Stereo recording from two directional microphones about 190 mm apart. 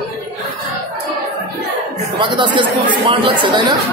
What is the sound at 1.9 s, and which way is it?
Speech, 25° right (ahead or behind).